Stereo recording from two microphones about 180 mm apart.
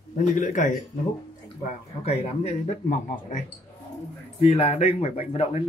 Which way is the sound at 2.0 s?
35° left (ahead or behind).